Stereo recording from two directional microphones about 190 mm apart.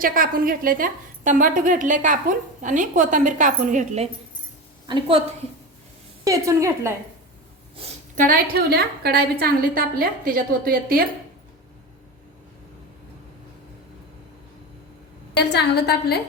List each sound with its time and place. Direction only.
0.0 s a woman's voice: 45° right (ahead or behind)
4.9 s a woman's voice: 30° right (ahead or behind)
6.2 s a woman's voice: 15° right (ahead or behind)
7.8 s a woman's voice: 45° right (ahead or behind)
15.4 s a woman's voice: 60° left (ahead or behind)